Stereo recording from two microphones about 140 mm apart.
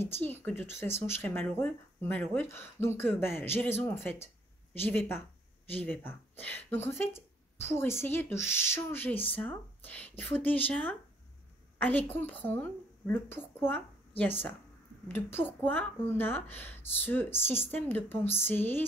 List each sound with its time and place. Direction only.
0.0 s speech: 15° left (ahead or behind)